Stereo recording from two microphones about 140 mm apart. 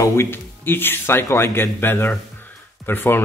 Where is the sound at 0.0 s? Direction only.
15° left (ahead or behind).